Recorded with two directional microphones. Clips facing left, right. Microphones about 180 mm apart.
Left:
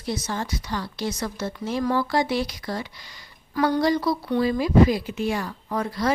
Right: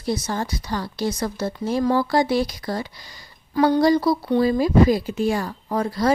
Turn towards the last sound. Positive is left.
turn(degrees=-35)  # may be behind; listen again after turning